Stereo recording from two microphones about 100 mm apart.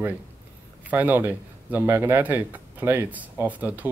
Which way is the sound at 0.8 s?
20° right (ahead or behind).